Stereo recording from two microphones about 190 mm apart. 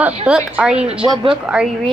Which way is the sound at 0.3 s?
5° right (ahead or behind).